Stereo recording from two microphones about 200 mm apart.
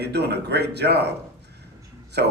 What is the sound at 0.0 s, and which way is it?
Speech, 55° right (ahead or behind).